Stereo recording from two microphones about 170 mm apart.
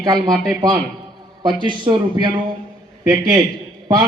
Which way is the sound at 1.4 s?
25° right (ahead or behind).